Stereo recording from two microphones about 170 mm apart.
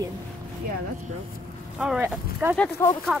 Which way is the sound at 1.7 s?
5° right (ahead or behind).